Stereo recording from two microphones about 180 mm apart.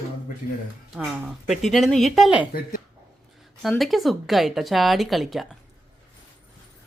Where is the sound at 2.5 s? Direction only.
50° left (ahead or behind).